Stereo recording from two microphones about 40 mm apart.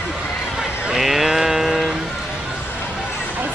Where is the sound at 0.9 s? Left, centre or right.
Centre.